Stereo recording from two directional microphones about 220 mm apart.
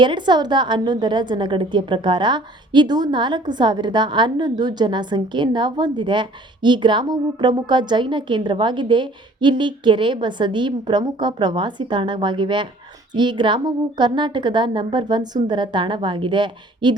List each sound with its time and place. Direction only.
0.0 s a woman's voice: 20° right (ahead or behind)